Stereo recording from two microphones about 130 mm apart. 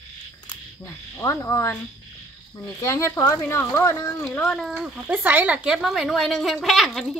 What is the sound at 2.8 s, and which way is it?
Speech, 20° left (ahead or behind).